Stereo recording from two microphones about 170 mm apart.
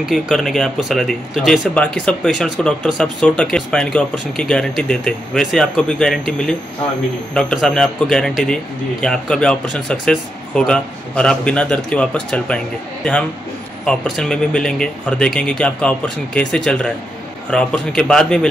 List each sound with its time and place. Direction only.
0.0 s speech: centre (ahead or behind)